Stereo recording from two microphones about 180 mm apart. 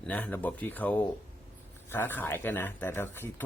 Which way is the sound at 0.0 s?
10° left (ahead or behind).